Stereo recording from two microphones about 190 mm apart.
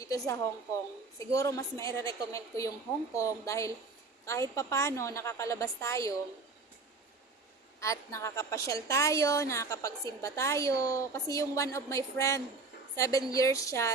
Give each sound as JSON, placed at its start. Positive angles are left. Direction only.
{"t": 0.0, "sound": "a woman's voice", "side_deg": 15}
{"t": 7.8, "sound": "a woman's voice", "side_deg": 15}